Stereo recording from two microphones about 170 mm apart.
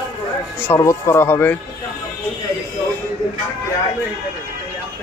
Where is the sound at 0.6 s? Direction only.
15° left (ahead or behind).